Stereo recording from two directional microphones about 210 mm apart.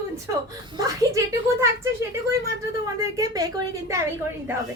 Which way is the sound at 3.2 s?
15° right (ahead or behind).